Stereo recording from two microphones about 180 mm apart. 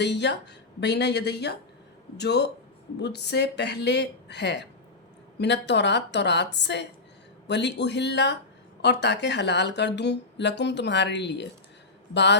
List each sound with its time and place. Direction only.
0.0 s speech: 75° left (ahead or behind)